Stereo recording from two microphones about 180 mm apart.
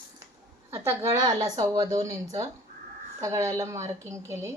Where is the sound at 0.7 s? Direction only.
15° right (ahead or behind).